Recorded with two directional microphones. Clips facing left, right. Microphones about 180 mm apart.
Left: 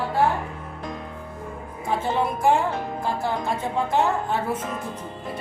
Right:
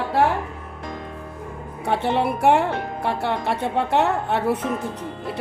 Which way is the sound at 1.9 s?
70° right (ahead or behind).